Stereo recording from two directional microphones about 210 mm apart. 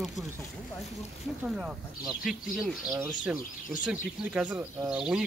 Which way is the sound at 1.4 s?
5° right (ahead or behind).